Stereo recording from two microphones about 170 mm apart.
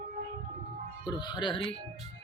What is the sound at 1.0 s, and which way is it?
Speech, 25° left (ahead or behind).